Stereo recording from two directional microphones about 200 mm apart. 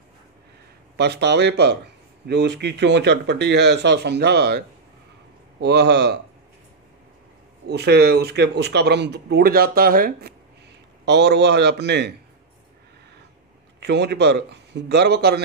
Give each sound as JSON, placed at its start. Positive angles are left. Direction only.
{"t": 0.9, "sound": "speech", "side_deg": -55}
{"t": 7.6, "sound": "speech", "side_deg": -55}
{"t": 11.1, "sound": "speech", "side_deg": -60}
{"t": 13.7, "sound": "speech", "side_deg": -60}